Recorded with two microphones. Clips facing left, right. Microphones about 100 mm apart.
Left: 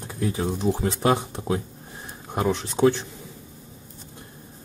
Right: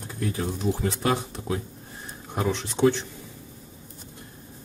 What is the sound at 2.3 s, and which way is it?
Speech, 10° left (ahead or behind).